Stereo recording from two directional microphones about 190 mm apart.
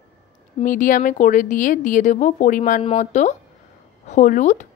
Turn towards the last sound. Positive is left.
turn(degrees=40)  # may be behind; listen again after turning